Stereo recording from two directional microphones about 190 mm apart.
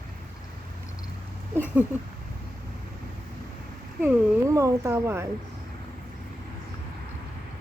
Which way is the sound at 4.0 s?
15° right (ahead or behind).